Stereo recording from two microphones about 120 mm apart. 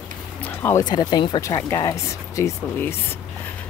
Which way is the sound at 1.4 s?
25° left (ahead or behind).